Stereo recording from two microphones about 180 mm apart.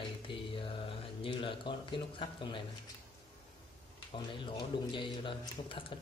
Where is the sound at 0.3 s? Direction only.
30° left (ahead or behind).